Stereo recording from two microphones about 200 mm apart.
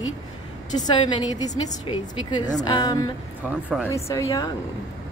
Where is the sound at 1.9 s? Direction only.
25° left (ahead or behind).